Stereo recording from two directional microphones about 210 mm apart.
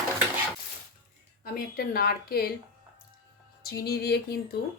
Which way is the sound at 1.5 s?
45° left (ahead or behind).